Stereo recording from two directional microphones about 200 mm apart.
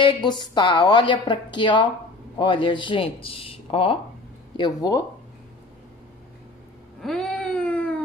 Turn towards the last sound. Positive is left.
turn(degrees=5)  # may be behind; listen again after turning